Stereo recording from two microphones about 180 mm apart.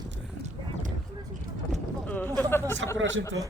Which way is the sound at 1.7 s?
10° left (ahead or behind).